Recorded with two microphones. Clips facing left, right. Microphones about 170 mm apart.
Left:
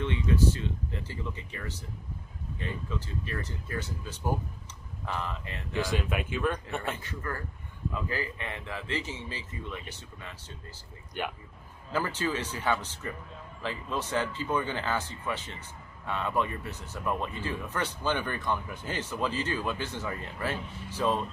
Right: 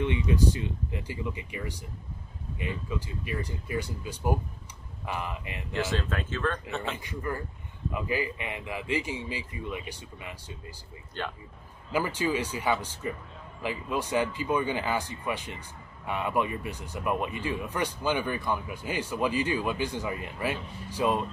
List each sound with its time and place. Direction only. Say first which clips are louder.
0.0 s speech: right 1 dB; 15° right (ahead or behind)
5.7 s speech: even; 15° left (ahead or behind)
7.0 s speech: right 3 dB; 15° right (ahead or behind)
11.2 s speech: left 1 dB; 15° left (ahead or behind)
11.9 s speech: right 3 dB; 10° right (ahead or behind)